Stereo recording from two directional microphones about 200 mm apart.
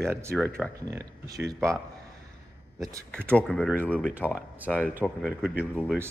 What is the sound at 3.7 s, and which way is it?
Speech, 10° right (ahead or behind).